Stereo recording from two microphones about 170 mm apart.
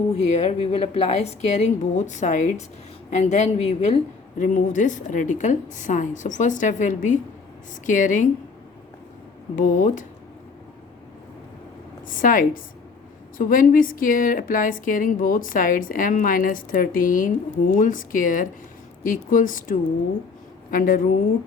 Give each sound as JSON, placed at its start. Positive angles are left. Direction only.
{"t": 0.3, "sound": "a woman's voice", "side_deg": 40}
{"t": 9.6, "sound": "a woman's voice", "side_deg": 50}
{"t": 12.0, "sound": "a woman's voice", "side_deg": 55}